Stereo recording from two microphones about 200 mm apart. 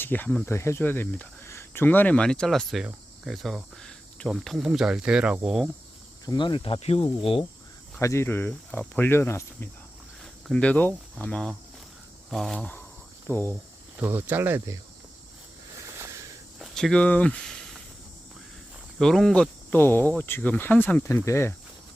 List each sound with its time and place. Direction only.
0.0 s speech: 10° left (ahead or behind)
6.2 s speech: 25° left (ahead or behind)
7.9 s speech: 15° left (ahead or behind)
14.0 s speech: 10° right (ahead or behind)
16.0 s a sound: 15° right (ahead or behind)
16.6 s a sound: centre (ahead or behind)
18.9 s speech: centre (ahead or behind)